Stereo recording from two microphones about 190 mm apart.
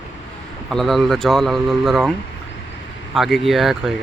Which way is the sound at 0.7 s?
Centre (ahead or behind).